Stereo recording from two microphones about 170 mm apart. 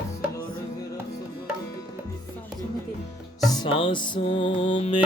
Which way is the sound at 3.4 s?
25° left (ahead or behind).